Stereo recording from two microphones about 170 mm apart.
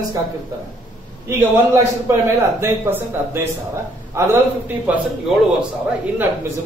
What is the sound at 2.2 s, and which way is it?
Speech, 15° right (ahead or behind).